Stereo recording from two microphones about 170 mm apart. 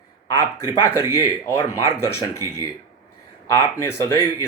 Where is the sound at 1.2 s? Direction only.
15° left (ahead or behind).